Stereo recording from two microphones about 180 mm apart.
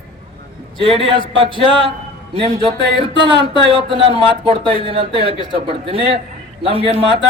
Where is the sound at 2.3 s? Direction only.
30° right (ahead or behind).